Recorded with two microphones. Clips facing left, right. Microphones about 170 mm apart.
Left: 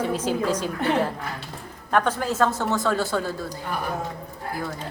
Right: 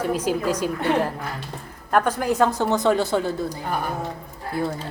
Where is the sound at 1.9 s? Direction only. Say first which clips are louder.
Right 2 dB; 10° right (ahead or behind).